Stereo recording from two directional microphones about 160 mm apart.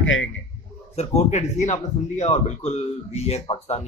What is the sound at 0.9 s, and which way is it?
Speech, 45° left (ahead or behind).